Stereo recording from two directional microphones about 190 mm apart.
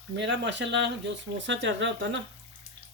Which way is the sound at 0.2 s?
70° right (ahead or behind).